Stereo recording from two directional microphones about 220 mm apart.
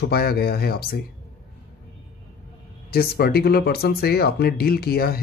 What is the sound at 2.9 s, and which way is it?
Speech, 45° left (ahead or behind).